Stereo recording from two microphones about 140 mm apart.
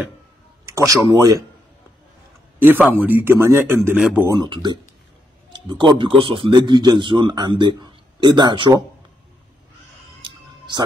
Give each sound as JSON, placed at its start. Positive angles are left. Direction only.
{"t": 0.7, "sound": "a sound", "side_deg": -20}
{"t": 1.1, "sound": "a man's voice", "side_deg": -25}
{"t": 2.6, "sound": "speech", "side_deg": -15}
{"t": 4.3, "sound": "a man's voice", "side_deg": -30}